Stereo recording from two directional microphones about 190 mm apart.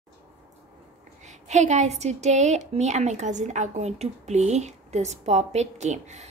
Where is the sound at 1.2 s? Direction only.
40° right (ahead or behind).